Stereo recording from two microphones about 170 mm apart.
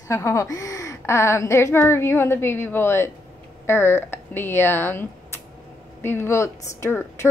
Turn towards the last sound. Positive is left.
turn(degrees=15)  # may be behind; listen again after turning